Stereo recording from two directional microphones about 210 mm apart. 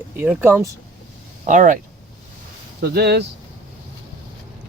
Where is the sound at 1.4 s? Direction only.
35° right (ahead or behind).